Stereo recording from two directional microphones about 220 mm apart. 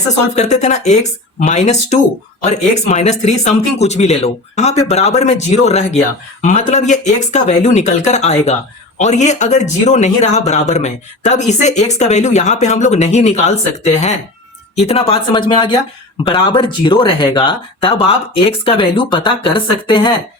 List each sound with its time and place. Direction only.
0.3 s speech: 30° left (ahead or behind)